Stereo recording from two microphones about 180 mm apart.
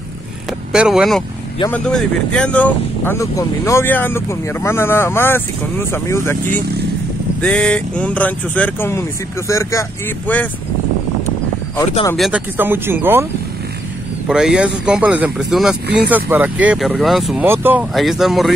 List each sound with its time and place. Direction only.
0.7 s speech: 5° right (ahead or behind)
12.2 s speech: 5° right (ahead or behind)